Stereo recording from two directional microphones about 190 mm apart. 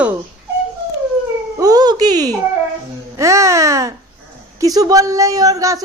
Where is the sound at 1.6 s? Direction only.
20° right (ahead or behind).